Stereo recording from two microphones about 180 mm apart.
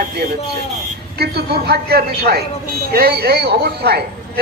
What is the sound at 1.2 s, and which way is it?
Speech, 65° right (ahead or behind).